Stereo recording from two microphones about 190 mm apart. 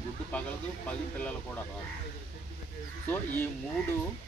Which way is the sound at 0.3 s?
5° left (ahead or behind).